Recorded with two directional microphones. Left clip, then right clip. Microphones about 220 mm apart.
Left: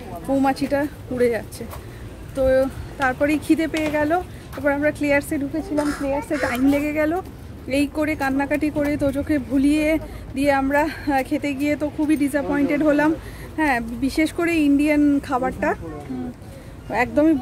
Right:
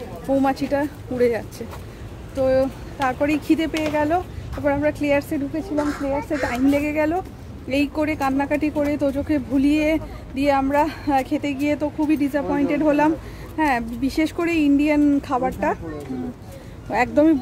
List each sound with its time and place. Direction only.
0.3 s speech: centre (ahead or behind)
16.9 s speech: 5° right (ahead or behind)